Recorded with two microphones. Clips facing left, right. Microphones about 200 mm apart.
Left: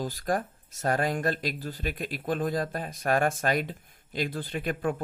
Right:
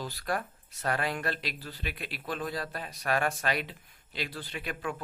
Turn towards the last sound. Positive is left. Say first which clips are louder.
# left 7 dB
turn(degrees=50)  # may be behind; listen again after turning